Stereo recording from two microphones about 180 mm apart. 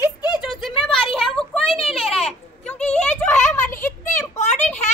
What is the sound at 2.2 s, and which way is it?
Children playing, 5° left (ahead or behind).